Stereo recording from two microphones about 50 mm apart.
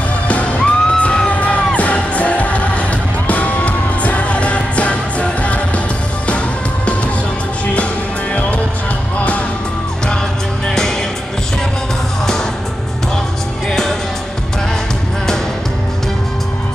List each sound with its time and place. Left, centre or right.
0.3 s music: left
8.3 s music: left
13.7 s music: centre